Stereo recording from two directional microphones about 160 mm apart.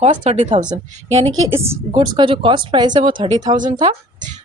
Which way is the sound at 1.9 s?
30° right (ahead or behind).